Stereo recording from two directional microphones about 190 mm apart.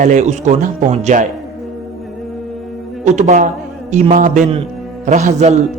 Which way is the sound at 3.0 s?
40° right (ahead or behind).